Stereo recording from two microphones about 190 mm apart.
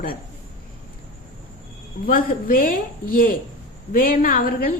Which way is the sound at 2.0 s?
45° left (ahead or behind).